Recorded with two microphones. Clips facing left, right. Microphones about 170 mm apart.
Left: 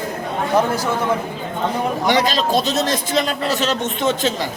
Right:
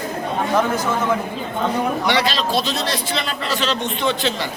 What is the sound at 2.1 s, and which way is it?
A man's voice, 45° left (ahead or behind).